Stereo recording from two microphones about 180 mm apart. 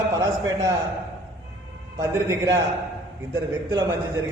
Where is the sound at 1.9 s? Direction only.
20° right (ahead or behind).